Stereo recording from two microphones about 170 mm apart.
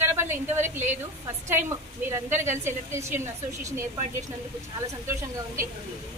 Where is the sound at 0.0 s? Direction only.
15° right (ahead or behind).